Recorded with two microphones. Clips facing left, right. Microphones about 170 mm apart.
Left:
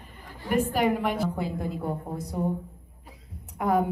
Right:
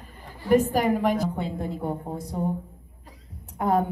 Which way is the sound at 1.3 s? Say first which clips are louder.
Even; 25° right (ahead or behind).